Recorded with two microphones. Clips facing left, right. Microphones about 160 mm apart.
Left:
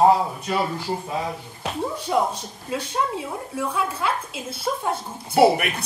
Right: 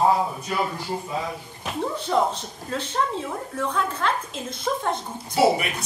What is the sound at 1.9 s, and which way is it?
A woman's voice, 10° left (ahead or behind).